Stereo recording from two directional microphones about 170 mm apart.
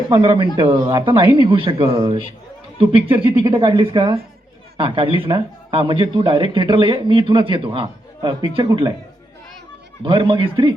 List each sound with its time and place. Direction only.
0.1 s speech: 30° right (ahead or behind)
3.2 s speech: 30° right (ahead or behind)
10.0 s speech: 30° right (ahead or behind)